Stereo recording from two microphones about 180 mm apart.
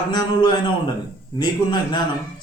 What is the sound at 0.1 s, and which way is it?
Speech, 25° left (ahead or behind).